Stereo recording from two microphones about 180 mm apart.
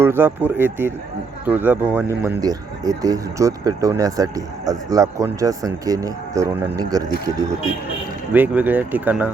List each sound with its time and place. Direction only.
0.0 s speech: 10° right (ahead or behind)
8.3 s speech: 10° right (ahead or behind)